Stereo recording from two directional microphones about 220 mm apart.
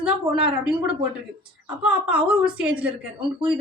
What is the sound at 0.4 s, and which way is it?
Speech, 5° right (ahead or behind).